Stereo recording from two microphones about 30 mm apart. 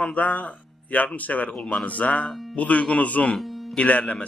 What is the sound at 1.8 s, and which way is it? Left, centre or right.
Speech, left.